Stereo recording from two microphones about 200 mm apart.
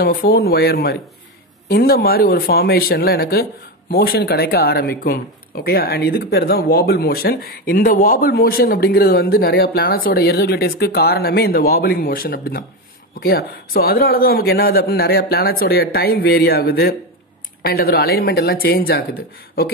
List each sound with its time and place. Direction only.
0.0 s speech: 50° left (ahead or behind)